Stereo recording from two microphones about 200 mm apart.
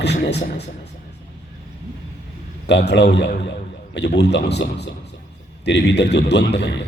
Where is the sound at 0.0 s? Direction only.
55° left (ahead or behind).